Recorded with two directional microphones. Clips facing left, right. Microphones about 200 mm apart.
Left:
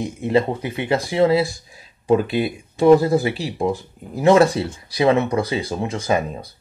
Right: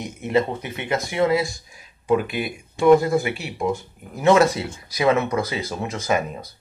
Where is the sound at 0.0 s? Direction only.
30° left (ahead or behind).